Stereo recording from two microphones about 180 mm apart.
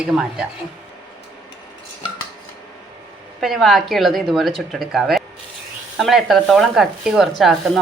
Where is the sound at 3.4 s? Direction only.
Centre (ahead or behind).